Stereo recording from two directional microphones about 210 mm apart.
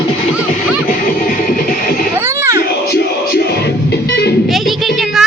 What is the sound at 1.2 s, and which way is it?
Music, 45° left (ahead or behind).